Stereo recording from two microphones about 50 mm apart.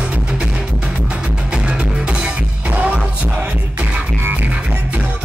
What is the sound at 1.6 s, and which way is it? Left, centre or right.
Music, right.